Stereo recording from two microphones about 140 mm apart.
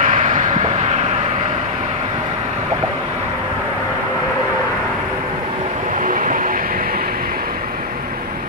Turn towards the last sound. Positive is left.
turn(degrees=-90)